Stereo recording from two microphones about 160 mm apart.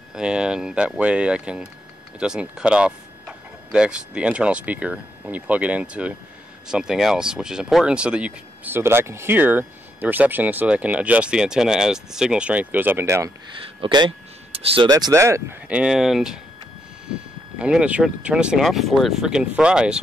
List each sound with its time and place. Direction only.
0.1 s speech: 5° right (ahead or behind)
13.7 s speech: 30° right (ahead or behind)
15.8 s speech: centre (ahead or behind)
17.6 s speech: 5° right (ahead or behind)